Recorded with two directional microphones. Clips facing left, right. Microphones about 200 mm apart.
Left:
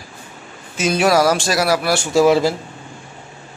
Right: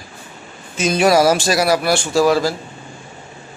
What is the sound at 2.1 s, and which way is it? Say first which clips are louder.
Speech: left 3 dB; 20° left (ahead or behind).